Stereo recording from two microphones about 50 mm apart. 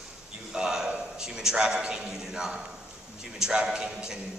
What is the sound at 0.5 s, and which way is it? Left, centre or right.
A man's voice, centre.